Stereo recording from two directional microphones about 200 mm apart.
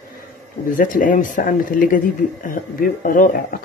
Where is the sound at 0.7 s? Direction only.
40° left (ahead or behind).